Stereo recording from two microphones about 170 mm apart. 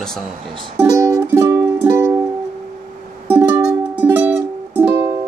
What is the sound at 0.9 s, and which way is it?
Music, 15° right (ahead or behind).